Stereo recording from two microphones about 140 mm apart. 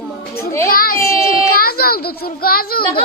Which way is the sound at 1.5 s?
90° left.